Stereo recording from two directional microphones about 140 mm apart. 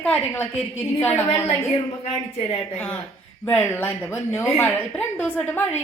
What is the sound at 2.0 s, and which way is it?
Speech, 45° left (ahead or behind).